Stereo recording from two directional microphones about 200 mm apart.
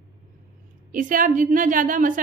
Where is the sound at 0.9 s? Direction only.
40° right (ahead or behind).